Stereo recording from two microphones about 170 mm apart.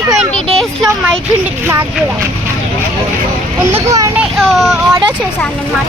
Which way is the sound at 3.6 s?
15° right (ahead or behind).